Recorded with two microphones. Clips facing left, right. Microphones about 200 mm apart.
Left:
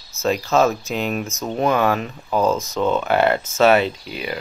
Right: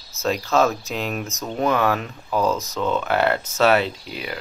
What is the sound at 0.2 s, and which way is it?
Speech, 5° left (ahead or behind).